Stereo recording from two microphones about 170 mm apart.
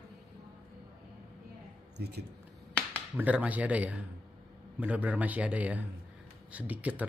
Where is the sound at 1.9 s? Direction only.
70° right (ahead or behind).